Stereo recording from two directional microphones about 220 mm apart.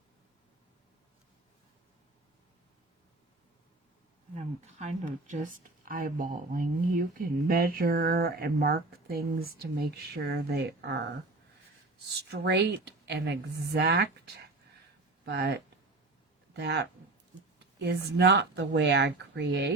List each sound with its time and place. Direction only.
4.4 s speech: 30° right (ahead or behind); by 11.1 s 50° right (ahead or behind)
12.3 s speech: 50° right (ahead or behind)
15.2 s speech: 50° right (ahead or behind)
16.6 s speech: 50° right (ahead or behind)